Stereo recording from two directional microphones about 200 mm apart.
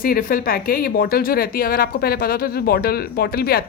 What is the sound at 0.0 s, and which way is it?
Speech, 45° left (ahead or behind).